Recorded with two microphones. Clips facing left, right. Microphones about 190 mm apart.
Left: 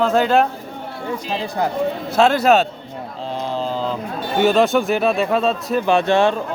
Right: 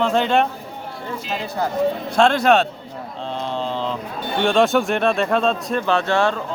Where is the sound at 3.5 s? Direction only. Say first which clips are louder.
Left 2 dB; 5° left (ahead or behind).